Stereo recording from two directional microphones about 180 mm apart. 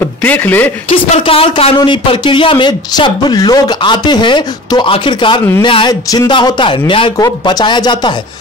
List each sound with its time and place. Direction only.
0.2 s speech: 10° left (ahead or behind)
0.8 s a man's voice: 30° left (ahead or behind)